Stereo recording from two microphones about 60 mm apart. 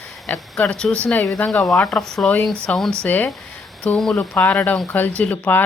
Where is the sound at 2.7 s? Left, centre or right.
Left.